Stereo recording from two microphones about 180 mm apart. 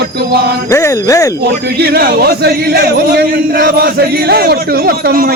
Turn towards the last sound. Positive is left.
turn(degrees=-55)  # may be behind; listen again after turning